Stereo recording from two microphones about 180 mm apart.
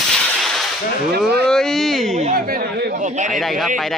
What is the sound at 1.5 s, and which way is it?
Speech, centre (ahead or behind).